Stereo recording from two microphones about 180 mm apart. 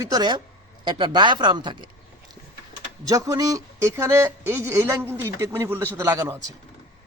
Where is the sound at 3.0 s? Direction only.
20° right (ahead or behind).